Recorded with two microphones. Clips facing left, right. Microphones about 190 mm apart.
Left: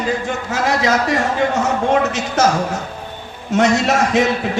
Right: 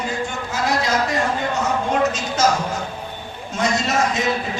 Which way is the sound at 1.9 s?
65° left (ahead or behind).